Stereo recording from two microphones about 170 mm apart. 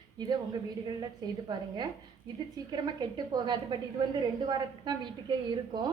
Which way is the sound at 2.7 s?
25° right (ahead or behind).